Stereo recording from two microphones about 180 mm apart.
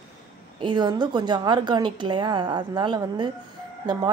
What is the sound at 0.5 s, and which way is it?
A woman's voice, 25° right (ahead or behind).